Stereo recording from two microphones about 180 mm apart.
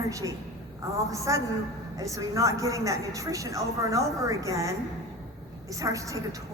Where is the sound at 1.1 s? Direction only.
15° right (ahead or behind).